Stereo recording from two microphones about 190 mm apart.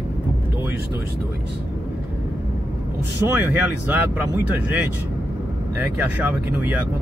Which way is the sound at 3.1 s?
10° right (ahead or behind).